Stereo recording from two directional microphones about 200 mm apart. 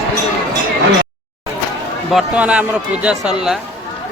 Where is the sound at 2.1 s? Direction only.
5° right (ahead or behind).